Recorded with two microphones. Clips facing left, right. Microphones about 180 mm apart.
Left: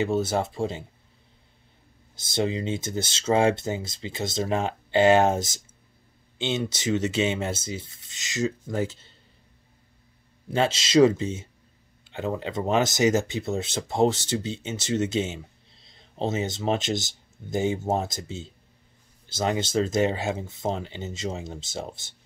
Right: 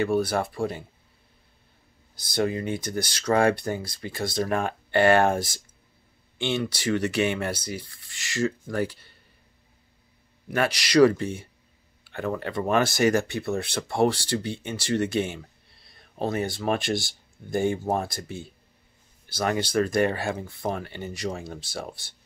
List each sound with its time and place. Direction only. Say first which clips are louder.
0.0 s speech: right 1 dB; 20° left (ahead or behind)
2.1 s speech: even; 25° left (ahead or behind)
10.5 s speech: left 1 dB; 25° left (ahead or behind)